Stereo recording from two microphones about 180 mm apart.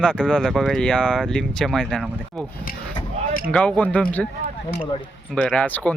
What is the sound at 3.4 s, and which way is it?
Speech, 5° left (ahead or behind).